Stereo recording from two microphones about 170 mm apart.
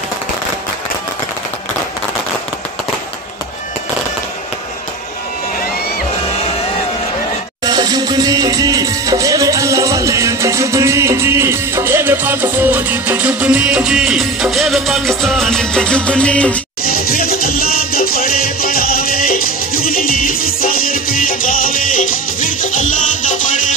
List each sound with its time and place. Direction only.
7.6 s music: 25° right (ahead or behind); by 16.6 s 5° left (ahead or behind)
16.8 s salsa music: 60° left (ahead or behind)